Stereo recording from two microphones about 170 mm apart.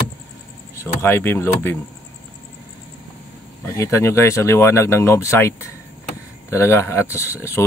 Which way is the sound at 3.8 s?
15° left (ahead or behind).